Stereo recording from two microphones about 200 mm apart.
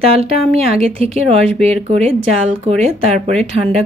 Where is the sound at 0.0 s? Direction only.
30° right (ahead or behind).